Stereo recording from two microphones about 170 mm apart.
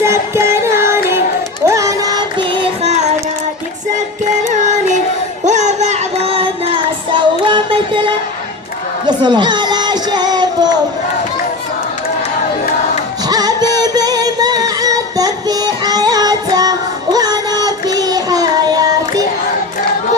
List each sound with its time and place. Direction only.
0.0 s music: 15° right (ahead or behind); by 3.0 s 35° right (ahead or behind)
3.9 s child singing: 45° right (ahead or behind)
5.5 s music: 45° right (ahead or behind)
9.0 s speech: 25° right (ahead or behind)
13.2 s music: 20° right (ahead or behind)